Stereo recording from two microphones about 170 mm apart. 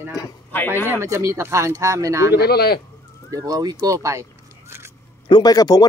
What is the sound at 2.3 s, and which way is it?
Speech, 70° left (ahead or behind).